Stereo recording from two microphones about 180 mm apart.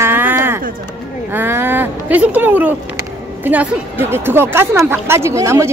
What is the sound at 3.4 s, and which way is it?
A woman's voice, 10° right (ahead or behind).